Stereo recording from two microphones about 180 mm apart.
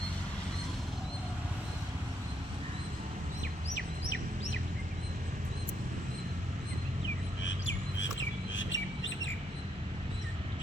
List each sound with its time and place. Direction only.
7.4 s bird: 90° left